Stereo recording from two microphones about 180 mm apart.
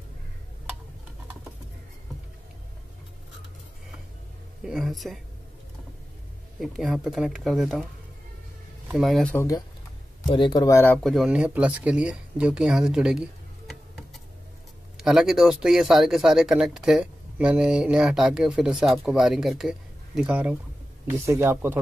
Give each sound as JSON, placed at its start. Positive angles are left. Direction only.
{"t": 4.6, "sound": "speech", "side_deg": 0}
{"t": 6.6, "sound": "speech", "side_deg": 0}
{"t": 8.9, "sound": "speech", "side_deg": 0}
{"t": 10.3, "sound": "speech", "side_deg": 25}
{"t": 11.0, "sound": "speech", "side_deg": 0}